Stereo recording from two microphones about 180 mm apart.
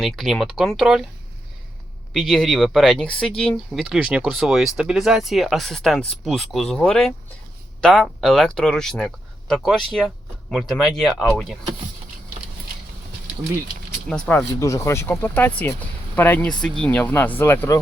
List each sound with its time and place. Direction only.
0.0 s speech: centre (ahead or behind)
2.1 s speech: centre (ahead or behind)
14.1 s speech: 5° left (ahead or behind)
14.6 s speech: 15° left (ahead or behind)